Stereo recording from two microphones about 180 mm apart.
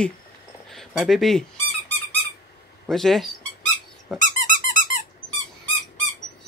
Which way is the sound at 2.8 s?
Centre (ahead or behind).